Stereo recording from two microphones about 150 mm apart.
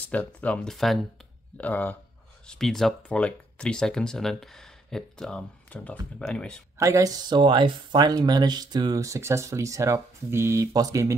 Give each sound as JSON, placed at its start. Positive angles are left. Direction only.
{"t": 0.0, "sound": "speech", "side_deg": 10}
{"t": 6.8, "sound": "speech", "side_deg": -20}